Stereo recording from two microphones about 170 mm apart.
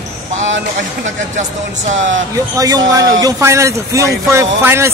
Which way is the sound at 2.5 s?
20° right (ahead or behind).